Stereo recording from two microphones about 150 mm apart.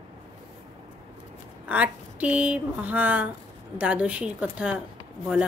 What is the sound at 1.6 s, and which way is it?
Speech, 10° right (ahead or behind).